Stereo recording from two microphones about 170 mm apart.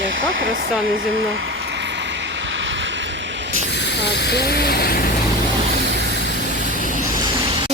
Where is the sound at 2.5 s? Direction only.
90° right.